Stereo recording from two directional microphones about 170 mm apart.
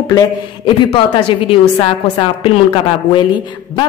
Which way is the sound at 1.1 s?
30° left (ahead or behind).